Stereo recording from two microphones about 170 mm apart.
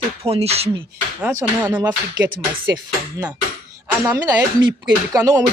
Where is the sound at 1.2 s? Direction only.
10° right (ahead or behind).